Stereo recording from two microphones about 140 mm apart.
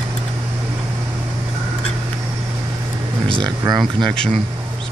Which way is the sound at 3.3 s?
30° right (ahead or behind).